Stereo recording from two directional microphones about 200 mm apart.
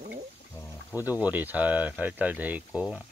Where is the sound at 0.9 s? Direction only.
15° left (ahead or behind).